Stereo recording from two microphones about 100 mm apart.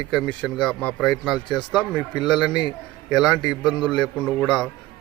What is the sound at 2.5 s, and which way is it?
Speech, 45° left (ahead or behind).